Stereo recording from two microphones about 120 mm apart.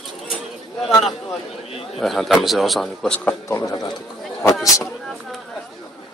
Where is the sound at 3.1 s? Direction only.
20° left (ahead or behind).